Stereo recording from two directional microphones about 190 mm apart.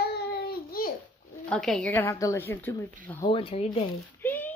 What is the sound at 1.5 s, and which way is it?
A woman's voice, 5° left (ahead or behind).